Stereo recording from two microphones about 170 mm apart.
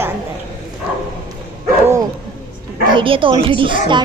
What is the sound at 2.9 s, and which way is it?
Speech, 30° right (ahead or behind).